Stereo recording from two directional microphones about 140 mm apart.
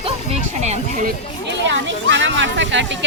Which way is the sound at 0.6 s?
55° right (ahead or behind).